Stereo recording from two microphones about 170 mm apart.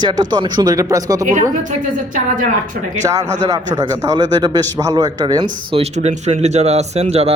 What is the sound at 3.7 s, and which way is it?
A man's voice, 20° right (ahead or behind).